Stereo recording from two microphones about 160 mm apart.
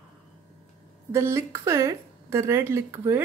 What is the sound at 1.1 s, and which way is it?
Speech, 15° right (ahead or behind).